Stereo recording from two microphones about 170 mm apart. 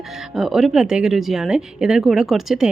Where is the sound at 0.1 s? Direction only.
Centre (ahead or behind).